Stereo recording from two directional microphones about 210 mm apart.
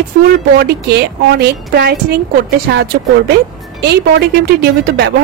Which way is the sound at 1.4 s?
50° right (ahead or behind).